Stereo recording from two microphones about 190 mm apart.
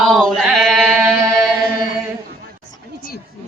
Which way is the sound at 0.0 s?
Centre (ahead or behind).